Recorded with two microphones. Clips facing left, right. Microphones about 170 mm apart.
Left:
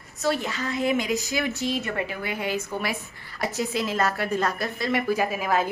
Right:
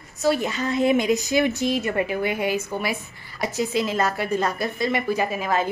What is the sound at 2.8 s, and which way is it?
A woman's voice, centre (ahead or behind).